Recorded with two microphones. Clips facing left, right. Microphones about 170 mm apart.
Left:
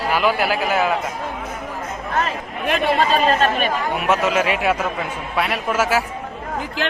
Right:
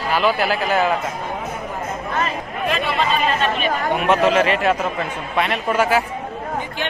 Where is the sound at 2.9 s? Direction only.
40° left (ahead or behind).